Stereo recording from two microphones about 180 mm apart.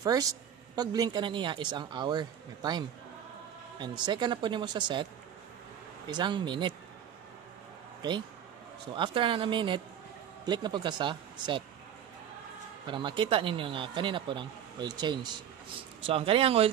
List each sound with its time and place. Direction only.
0.0 s a man's voice: 20° right (ahead or behind)
6.0 s a man's voice: 25° right (ahead or behind)
8.0 s a man's voice: 25° right (ahead or behind)
12.8 s a man's voice: 25° right (ahead or behind)
16.1 s speech: 30° right (ahead or behind)